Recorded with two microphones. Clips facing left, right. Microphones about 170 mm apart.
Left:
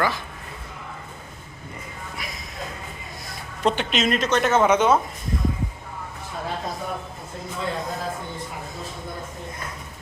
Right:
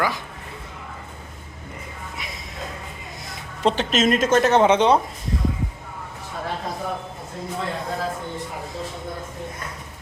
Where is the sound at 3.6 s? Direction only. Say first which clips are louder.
Right 3 dB; 35° right (ahead or behind).